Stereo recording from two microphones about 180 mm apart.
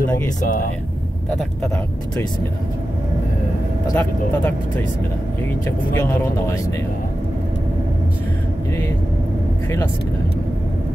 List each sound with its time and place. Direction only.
0.4 s speech: 50° left (ahead or behind)
3.8 s speech: 15° left (ahead or behind)
5.9 s speech: 15° left (ahead or behind)